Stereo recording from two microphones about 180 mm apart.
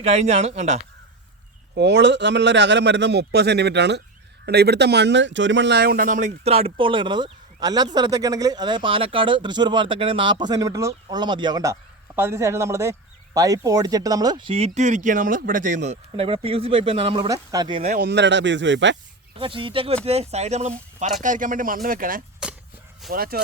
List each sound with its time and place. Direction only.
0.0 s speech: 35° right (ahead or behind)
1.7 s speech: 70° right (ahead or behind); by 17.2 s 30° right (ahead or behind)
17.2 s speech: 20° right (ahead or behind)
17.9 s speech: 70° right (ahead or behind); by 18.9 s 90° right
19.4 s speech: 30° right (ahead or behind); by 23.4 s 55° right (ahead or behind)